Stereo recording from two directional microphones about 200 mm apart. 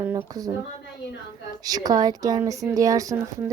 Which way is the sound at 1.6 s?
20° right (ahead or behind).